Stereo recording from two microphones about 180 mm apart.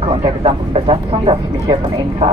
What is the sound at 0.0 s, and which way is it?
Speech, 30° right (ahead or behind).